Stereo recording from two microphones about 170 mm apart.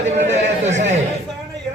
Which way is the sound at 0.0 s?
40° right (ahead or behind).